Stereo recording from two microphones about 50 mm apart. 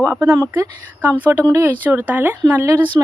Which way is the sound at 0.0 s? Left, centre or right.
Right.